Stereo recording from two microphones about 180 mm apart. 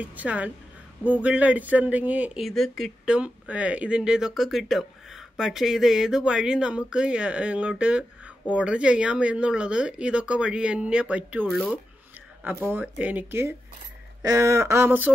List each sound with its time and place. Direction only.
0.0 s speech: 10° right (ahead or behind)